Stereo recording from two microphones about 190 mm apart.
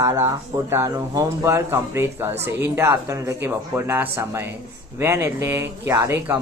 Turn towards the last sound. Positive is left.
turn(degrees=-15)  # may be behind; listen again after turning